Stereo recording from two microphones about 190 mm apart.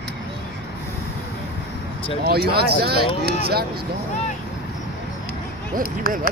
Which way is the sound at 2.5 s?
55° right (ahead or behind).